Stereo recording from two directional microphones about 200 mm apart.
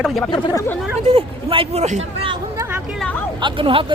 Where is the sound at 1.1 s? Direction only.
30° right (ahead or behind).